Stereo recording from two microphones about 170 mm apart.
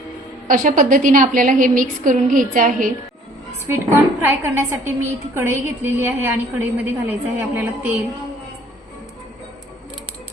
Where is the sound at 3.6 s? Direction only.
15° right (ahead or behind).